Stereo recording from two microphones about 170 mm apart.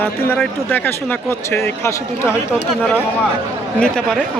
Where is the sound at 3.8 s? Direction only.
5° left (ahead or behind).